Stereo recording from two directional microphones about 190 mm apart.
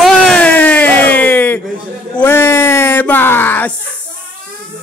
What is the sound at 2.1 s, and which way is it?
Speech, 10° left (ahead or behind).